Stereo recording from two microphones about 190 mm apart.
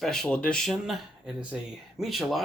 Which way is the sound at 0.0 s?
5° left (ahead or behind).